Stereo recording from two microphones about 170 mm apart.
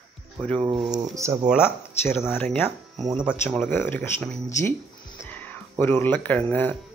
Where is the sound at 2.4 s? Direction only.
5° left (ahead or behind).